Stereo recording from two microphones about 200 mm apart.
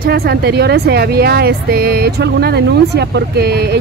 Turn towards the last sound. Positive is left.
turn(degrees=-55)  # may be behind; listen again after turning